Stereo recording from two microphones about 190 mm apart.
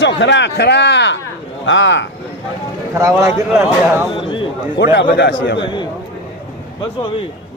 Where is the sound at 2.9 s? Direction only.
15° right (ahead or behind).